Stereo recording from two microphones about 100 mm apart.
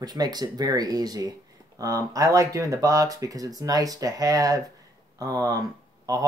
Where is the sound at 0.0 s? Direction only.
45° right (ahead or behind).